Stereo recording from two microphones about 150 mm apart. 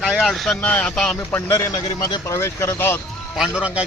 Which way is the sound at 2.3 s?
20° left (ahead or behind).